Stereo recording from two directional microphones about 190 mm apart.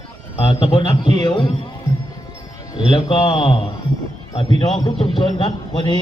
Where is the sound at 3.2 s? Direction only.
25° left (ahead or behind).